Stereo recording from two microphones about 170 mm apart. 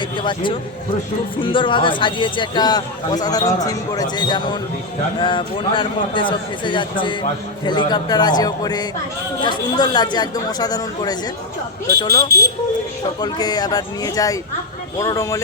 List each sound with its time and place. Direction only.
0.2 s speech: 30° left (ahead or behind)